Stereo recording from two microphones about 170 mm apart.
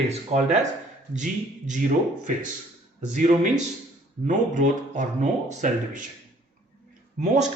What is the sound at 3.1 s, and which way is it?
A man's voice, 45° right (ahead or behind).